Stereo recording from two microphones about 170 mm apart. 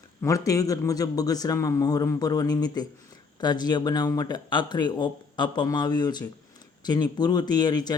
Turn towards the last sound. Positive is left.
turn(degrees=25)  # may be behind; listen again after turning